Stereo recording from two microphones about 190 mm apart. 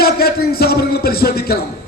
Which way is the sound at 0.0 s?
55° left (ahead or behind).